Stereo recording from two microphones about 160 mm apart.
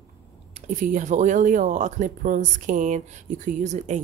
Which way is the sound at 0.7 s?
55° right (ahead or behind).